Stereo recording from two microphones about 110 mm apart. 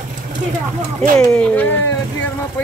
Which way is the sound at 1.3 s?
10° left (ahead or behind).